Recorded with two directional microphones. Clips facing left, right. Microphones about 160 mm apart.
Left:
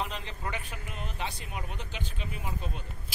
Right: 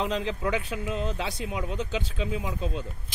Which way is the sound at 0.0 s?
90° right.